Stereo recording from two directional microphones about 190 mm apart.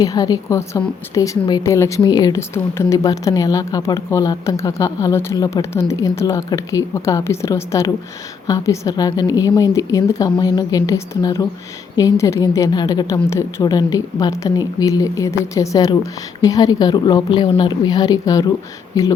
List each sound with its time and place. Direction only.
0.0 s a woman's voice: 20° left (ahead or behind)